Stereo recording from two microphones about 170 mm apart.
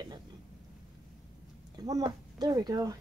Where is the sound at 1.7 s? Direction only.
20° right (ahead or behind).